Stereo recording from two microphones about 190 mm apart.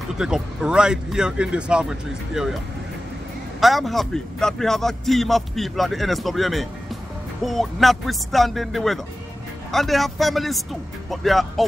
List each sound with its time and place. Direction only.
0.2 s a man's voice: 5° right (ahead or behind)
3.6 s a man's voice: centre (ahead or behind)